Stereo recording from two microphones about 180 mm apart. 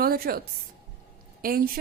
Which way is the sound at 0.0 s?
55° right (ahead or behind).